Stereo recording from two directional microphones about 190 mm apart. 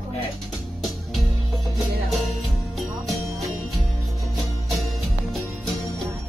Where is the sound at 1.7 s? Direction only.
Centre (ahead or behind).